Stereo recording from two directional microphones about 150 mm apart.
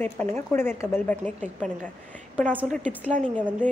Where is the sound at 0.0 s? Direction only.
15° left (ahead or behind).